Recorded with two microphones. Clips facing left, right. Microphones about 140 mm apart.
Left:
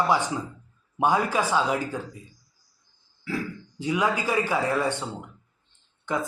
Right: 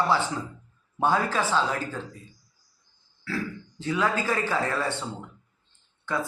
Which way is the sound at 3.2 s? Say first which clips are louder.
Left 1 dB; 15° left (ahead or behind).